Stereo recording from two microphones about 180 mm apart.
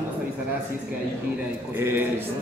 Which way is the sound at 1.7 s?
10° right (ahead or behind).